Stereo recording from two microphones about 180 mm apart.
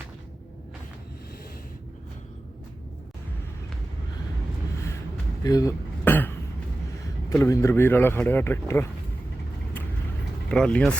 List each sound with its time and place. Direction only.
5.4 s a sound: 20° left (ahead or behind)
7.4 s speech: 15° left (ahead or behind)
10.5 s speech: 5° left (ahead or behind)